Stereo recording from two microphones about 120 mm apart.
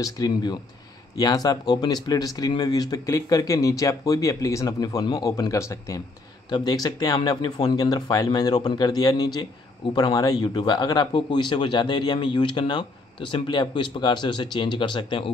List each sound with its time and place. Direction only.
0.0 s speech: 35° left (ahead or behind)